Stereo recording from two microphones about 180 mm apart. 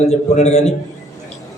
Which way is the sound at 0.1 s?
40° left (ahead or behind).